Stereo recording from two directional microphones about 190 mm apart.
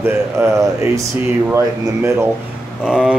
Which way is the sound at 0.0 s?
15° right (ahead or behind).